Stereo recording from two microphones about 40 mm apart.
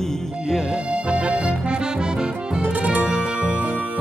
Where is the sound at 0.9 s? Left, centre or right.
Right.